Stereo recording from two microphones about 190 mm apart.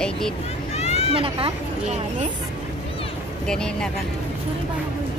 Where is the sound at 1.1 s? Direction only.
30° right (ahead or behind).